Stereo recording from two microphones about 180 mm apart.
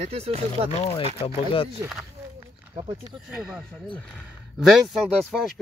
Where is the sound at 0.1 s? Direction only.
35° right (ahead or behind).